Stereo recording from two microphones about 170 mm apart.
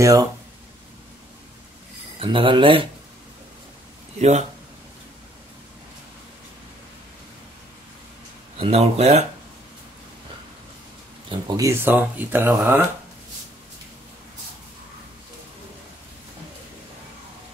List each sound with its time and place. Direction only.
0.0 s speech: 20° right (ahead or behind)
2.1 s speech: 30° right (ahead or behind)
4.2 s speech: 40° right (ahead or behind)
8.5 s speech: 35° right (ahead or behind)
11.2 s speech: 20° right (ahead or behind)